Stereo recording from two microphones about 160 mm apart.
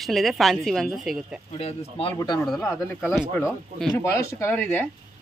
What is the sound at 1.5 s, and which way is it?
Speech, 35° left (ahead or behind).